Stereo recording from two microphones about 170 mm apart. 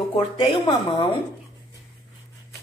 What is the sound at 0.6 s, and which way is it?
Speech, 30° left (ahead or behind).